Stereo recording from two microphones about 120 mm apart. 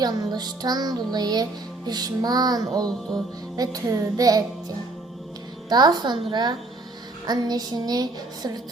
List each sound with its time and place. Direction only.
0.0 s music: 35° right (ahead or behind)
5.6 s music: 35° right (ahead or behind)